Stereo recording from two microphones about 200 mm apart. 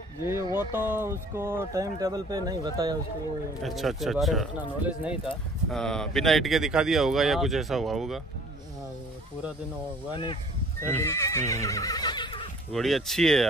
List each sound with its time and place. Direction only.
0.5 s speech: 20° left (ahead or behind)
0.9 s speech: 10° right (ahead or behind)
3.6 s speech: centre (ahead or behind)
10.8 s neigh: 15° left (ahead or behind)
12.7 s speech: centre (ahead or behind)